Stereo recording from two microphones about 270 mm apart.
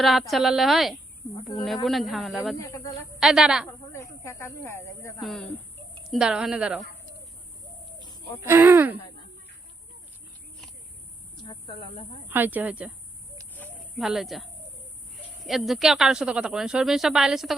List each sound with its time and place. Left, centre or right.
0.0 s a woman's voice: centre
2.6 s speech: centre
3.2 s a woman's voice: centre
3.7 s a woman's voice: centre
8.4 s speech: centre
11.4 s snake: centre
12.3 s speech: centre
13.6 s a sound: centre
15.4 s a woman's voice: centre